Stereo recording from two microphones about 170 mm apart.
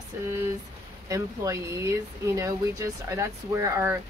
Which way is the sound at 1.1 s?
15° right (ahead or behind).